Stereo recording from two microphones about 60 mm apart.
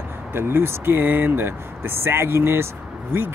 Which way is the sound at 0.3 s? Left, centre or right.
Right.